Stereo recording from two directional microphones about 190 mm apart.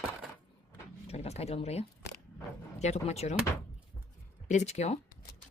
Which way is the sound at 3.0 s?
35° left (ahead or behind).